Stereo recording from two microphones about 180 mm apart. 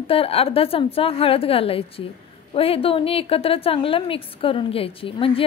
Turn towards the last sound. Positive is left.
turn(degrees=30)  # may be behind; listen again after turning